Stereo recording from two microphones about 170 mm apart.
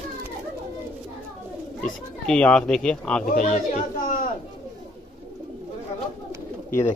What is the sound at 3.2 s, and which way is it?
Speech, 50° left (ahead or behind).